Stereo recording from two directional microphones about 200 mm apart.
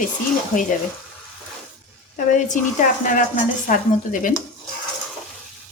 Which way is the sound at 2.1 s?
40° left (ahead or behind).